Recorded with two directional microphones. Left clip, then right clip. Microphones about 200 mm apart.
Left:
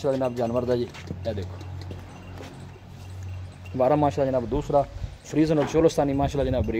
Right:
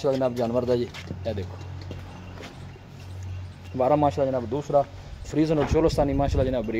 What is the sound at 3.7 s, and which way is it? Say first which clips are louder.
Speech: even; 15° left (ahead or behind).